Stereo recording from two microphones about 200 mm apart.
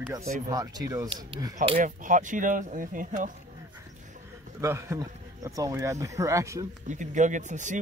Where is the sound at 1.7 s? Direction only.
40° right (ahead or behind).